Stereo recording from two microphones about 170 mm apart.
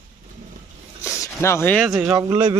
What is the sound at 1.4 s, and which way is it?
Speech, 15° left (ahead or behind).